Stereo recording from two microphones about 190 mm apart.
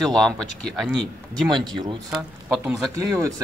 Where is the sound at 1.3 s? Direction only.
20° right (ahead or behind).